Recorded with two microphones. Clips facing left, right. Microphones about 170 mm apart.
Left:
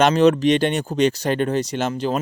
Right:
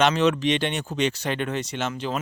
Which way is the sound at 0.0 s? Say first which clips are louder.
Left 6 dB; 40° left (ahead or behind).